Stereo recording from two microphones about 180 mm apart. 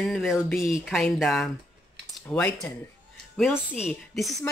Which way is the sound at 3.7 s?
Centre (ahead or behind).